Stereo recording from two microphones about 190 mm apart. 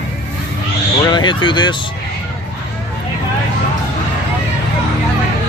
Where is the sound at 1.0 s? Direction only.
25° left (ahead or behind).